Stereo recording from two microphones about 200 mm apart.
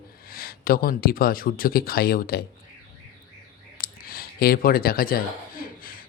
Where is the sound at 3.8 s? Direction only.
45° left (ahead or behind).